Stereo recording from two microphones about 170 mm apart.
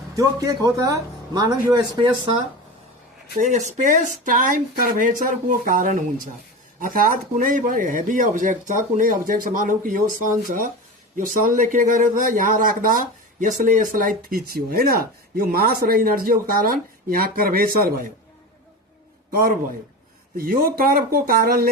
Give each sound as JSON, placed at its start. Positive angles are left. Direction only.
{"t": 0.2, "sound": "speech", "side_deg": -20}
{"t": 3.3, "sound": "a man's voice", "side_deg": -45}
{"t": 19.3, "sound": "a man's voice", "side_deg": -60}